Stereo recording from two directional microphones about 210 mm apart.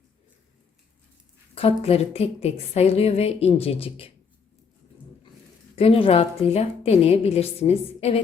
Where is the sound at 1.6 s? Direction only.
30° left (ahead or behind).